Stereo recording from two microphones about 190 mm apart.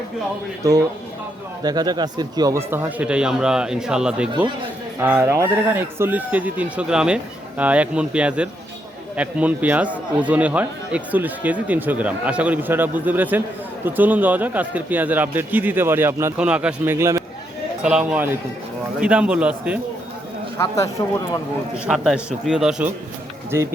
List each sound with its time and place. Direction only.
0.6 s a man's voice: 20° right (ahead or behind)
20.6 s speech: 15° left (ahead or behind)
21.8 s a man's voice: centre (ahead or behind)